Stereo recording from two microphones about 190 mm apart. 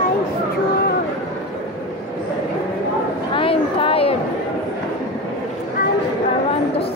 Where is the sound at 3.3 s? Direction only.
30° left (ahead or behind).